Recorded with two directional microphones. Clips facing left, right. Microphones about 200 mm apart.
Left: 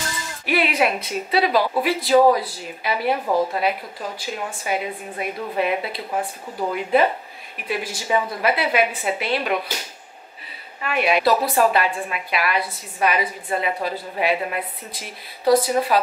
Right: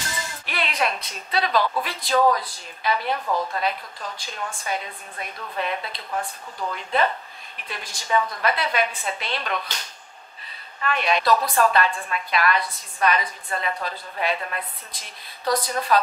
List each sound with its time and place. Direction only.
0.5 s a woman's voice: 5° left (ahead or behind)
3.3 s a woman's voice: 30° left (ahead or behind)
3.5 s a woman's voice: 10° left (ahead or behind)